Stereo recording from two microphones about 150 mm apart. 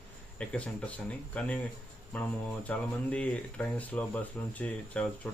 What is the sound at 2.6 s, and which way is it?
Speech, 10° left (ahead or behind).